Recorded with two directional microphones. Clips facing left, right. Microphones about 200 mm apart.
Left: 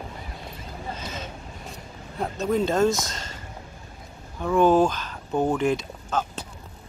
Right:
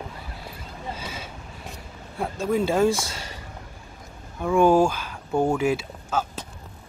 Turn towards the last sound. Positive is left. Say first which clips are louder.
# even
turn(degrees=-5)  # may be behind; listen again after turning